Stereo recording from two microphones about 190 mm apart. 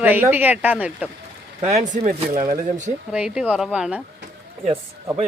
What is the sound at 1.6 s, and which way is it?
Speech, 35° right (ahead or behind).